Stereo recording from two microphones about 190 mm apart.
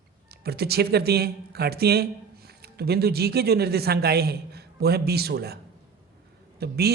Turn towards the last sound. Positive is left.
turn(degrees=-55)  # may be behind; listen again after turning